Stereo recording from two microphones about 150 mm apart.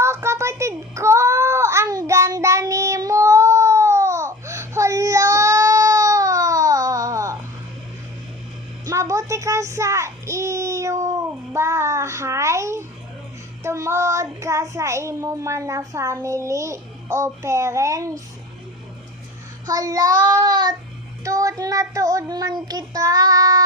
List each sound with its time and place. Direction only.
0.0 s child singing: 20° right (ahead or behind)
8.9 s child singing: 20° right (ahead or behind)
13.6 s a child's voice: 20° right (ahead or behind)
19.6 s child singing: 25° right (ahead or behind)